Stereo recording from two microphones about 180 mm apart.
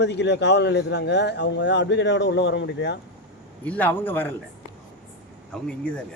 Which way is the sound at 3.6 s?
10° left (ahead or behind).